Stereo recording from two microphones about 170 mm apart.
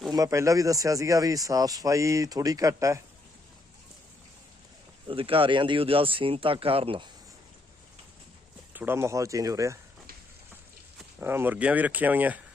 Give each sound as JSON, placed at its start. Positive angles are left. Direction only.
{"t": 0.1, "sound": "speech", "side_deg": -20}
{"t": 5.0, "sound": "speech", "side_deg": -30}
{"t": 8.7, "sound": "speech", "side_deg": -10}
{"t": 11.2, "sound": "speech", "side_deg": -15}